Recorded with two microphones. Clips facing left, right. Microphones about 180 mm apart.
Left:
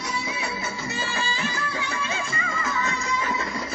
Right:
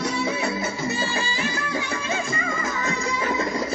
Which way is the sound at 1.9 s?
35° right (ahead or behind).